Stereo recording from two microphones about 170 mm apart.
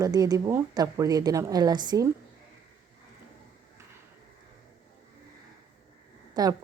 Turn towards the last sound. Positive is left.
turn(degrees=-25)  # may be behind; listen again after turning